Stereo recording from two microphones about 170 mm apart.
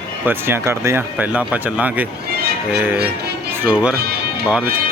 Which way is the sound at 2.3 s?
65° right (ahead or behind).